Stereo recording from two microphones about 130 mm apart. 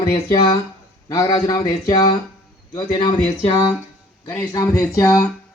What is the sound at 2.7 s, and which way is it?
A man's voice, 35° left (ahead or behind).